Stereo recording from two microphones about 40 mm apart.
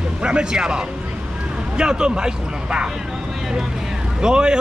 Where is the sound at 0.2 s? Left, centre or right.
Right.